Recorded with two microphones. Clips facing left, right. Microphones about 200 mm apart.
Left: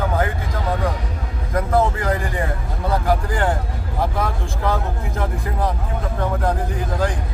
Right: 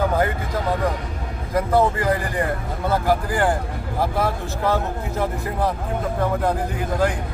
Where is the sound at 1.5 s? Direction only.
Centre (ahead or behind).